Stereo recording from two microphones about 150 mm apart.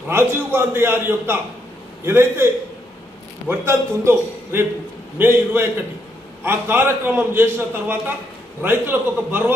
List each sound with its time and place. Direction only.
0.1 s a man's voice: 15° right (ahead or behind)